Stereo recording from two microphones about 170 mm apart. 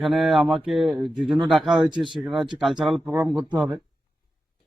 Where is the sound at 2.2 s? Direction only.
Centre (ahead or behind).